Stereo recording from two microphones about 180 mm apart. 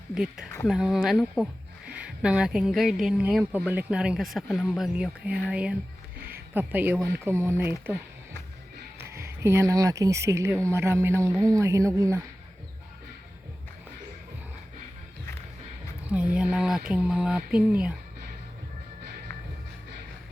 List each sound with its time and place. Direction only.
0.1 s speech: 5° right (ahead or behind)
9.0 s speech: 15° right (ahead or behind)
16.0 s speech: 5° right (ahead or behind)